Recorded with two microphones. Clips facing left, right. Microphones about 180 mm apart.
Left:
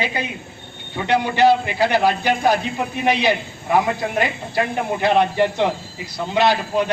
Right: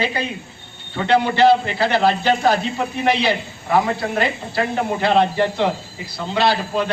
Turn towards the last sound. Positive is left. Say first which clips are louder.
# left 1 dB
turn(degrees=15)  # may be behind; listen again after turning